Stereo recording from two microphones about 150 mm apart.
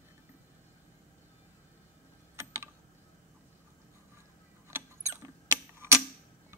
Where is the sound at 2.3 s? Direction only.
20° right (ahead or behind).